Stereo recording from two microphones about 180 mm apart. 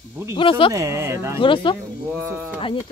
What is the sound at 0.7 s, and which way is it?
Speech, 15° right (ahead or behind).